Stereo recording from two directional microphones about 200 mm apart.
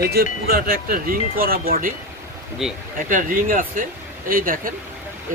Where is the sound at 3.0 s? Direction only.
45° right (ahead or behind).